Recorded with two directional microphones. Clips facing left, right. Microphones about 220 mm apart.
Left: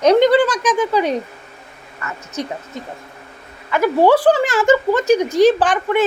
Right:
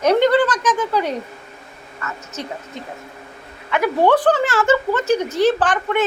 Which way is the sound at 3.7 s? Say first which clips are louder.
Left 3 dB; 5° left (ahead or behind).